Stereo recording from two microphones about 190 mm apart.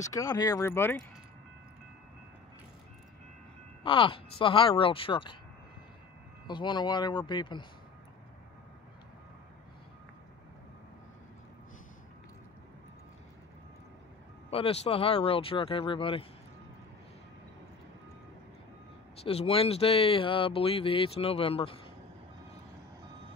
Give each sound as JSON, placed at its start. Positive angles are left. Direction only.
{"t": 0.1, "sound": "speech", "side_deg": 20}
{"t": 3.8, "sound": "speech", "side_deg": 25}
{"t": 6.4, "sound": "speech", "side_deg": 25}
{"t": 14.5, "sound": "speech", "side_deg": 30}
{"t": 19.2, "sound": "speech", "side_deg": 30}